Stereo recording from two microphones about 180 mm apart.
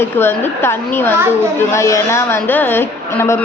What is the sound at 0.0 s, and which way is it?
A woman's voice, 15° left (ahead or behind).